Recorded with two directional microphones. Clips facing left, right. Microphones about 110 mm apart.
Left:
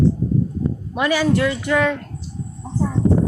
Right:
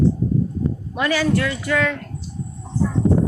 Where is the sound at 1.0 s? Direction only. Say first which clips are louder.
Left 2 dB; 15° left (ahead or behind).